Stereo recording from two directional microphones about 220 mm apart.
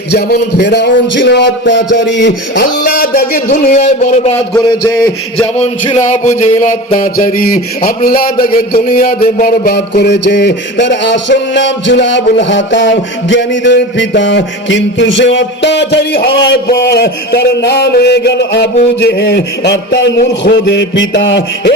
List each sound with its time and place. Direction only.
0.1 s music: 45° left (ahead or behind)
2.9 s speech: 40° left (ahead or behind)
4.5 s a sound: 15° left (ahead or behind)
5.5 s speech: 30° left (ahead or behind); by 12.2 s 55° left (ahead or behind)
12.4 s music: 55° left (ahead or behind)